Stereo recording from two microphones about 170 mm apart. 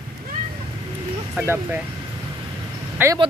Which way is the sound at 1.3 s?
15° right (ahead or behind).